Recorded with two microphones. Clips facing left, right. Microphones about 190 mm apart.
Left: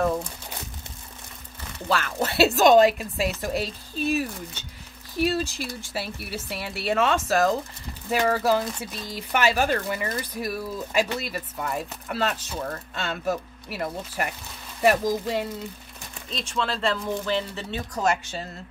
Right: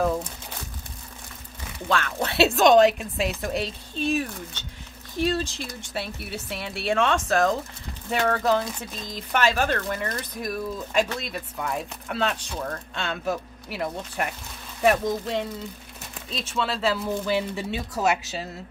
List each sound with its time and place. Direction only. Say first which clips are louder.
1.9 s speech: even; 5° left (ahead or behind)